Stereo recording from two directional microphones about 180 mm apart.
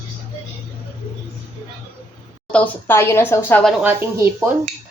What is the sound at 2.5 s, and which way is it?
A woman's voice, 10° left (ahead or behind).